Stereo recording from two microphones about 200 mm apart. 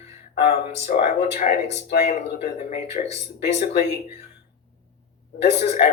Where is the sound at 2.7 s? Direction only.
35° left (ahead or behind).